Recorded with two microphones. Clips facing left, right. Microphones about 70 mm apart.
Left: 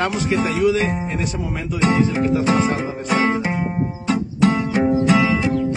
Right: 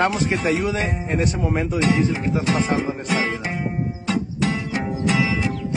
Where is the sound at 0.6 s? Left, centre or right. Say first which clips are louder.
Left 6 dB; right.